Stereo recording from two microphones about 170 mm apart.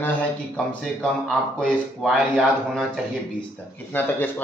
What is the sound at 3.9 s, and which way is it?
Speech, 10° left (ahead or behind).